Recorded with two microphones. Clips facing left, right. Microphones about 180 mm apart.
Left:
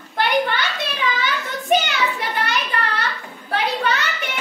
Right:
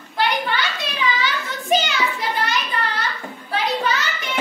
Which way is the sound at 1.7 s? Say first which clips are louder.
Left 1 dB; 60° left (ahead or behind).